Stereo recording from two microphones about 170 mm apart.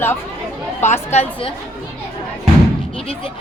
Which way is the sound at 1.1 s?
35° left (ahead or behind).